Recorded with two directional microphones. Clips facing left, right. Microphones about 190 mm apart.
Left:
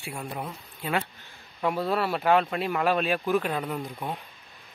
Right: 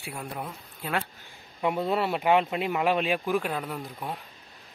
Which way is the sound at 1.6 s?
20° right (ahead or behind).